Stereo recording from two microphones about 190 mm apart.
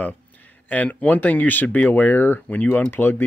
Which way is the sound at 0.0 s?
10° left (ahead or behind).